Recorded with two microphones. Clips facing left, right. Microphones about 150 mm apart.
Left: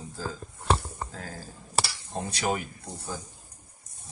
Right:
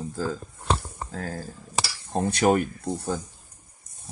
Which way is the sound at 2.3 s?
55° right (ahead or behind).